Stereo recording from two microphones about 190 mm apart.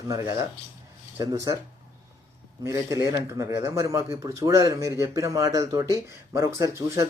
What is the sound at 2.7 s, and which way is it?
Speech, 15° right (ahead or behind).